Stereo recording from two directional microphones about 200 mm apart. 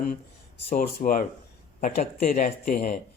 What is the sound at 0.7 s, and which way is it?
Speech, 45° left (ahead or behind).